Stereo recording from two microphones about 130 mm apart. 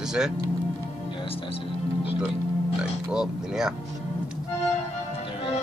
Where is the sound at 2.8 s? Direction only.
5° right (ahead or behind).